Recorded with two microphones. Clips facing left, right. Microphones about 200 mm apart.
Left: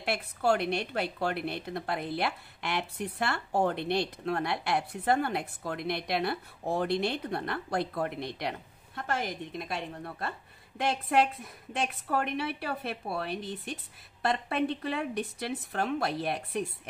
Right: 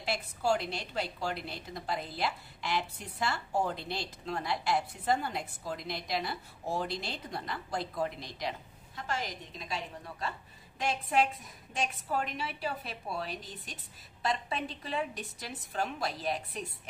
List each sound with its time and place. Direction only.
0.0 s a woman's voice: 60° left (ahead or behind)